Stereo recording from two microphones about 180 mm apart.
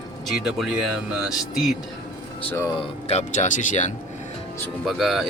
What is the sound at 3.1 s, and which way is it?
Speech, 40° left (ahead or behind).